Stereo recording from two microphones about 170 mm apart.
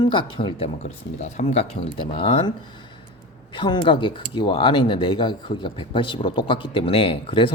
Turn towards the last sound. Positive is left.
turn(degrees=30)  # may be behind; listen again after turning